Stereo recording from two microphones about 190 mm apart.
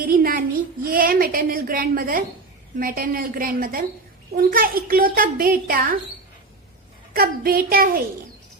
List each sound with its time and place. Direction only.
0.0 s child singing: 50° right (ahead or behind)
0.9 s a woman's voice: 50° right (ahead or behind)
7.1 s a woman's voice: 50° right (ahead or behind)